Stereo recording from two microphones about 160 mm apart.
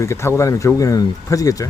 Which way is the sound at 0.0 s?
15° left (ahead or behind).